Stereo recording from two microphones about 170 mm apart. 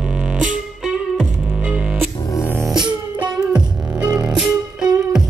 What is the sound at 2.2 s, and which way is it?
Music, 15° left (ahead or behind).